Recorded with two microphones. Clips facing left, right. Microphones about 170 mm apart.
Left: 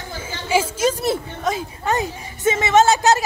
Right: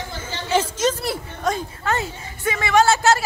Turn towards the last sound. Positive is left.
turn(degrees=20)  # may be behind; listen again after turning